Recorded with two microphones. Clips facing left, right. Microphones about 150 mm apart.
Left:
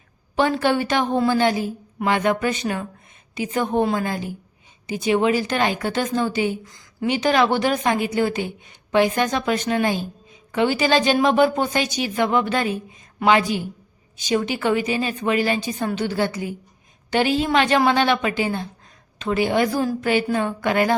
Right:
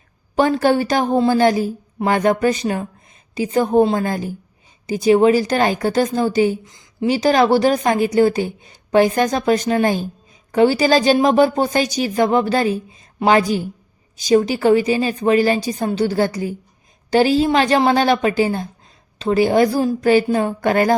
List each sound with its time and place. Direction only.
0.3 s a woman's voice: 40° right (ahead or behind)
6.7 s speech: 20° right (ahead or behind)
7.1 s a woman's voice: 35° right (ahead or behind)